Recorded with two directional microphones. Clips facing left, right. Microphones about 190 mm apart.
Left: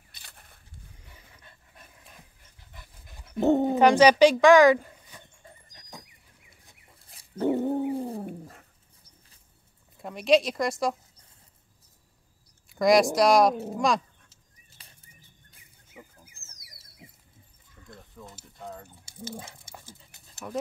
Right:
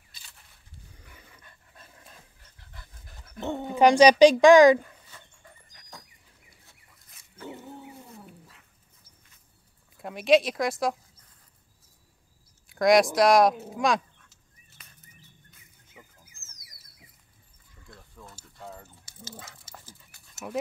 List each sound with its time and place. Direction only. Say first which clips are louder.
0.1 s a sound: left 3 dB; 60° left (ahead or behind)
2.6 s pant: even; 15° left (ahead or behind)
3.3 s speech: left 11 dB; 35° left (ahead or behind)
3.7 s a woman's voice: right 4 dB; 15° right (ahead or behind)
5.4 s dog: left 3 dB; 25° left (ahead or behind)
6.9 s dog: left 8 dB; 30° left (ahead or behind)
7.4 s dog: left 16 dB; 60° left (ahead or behind)
7.9 s cat: left 16 dB; 35° left (ahead or behind)
8.2 s cat: left 12 dB; 50° left (ahead or behind)
9.9 s speech: right 1 dB; centre (ahead or behind)
12.6 s speech: even; centre (ahead or behind)
14.3 s a sound: even; 30° left (ahead or behind)
20.0 s dog: left 2 dB; 25° left (ahead or behind)